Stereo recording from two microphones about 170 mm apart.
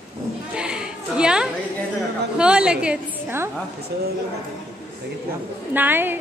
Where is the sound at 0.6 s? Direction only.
5° right (ahead or behind).